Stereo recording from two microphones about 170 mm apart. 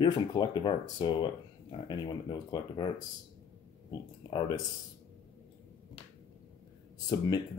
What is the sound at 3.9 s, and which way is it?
Speech, 25° left (ahead or behind).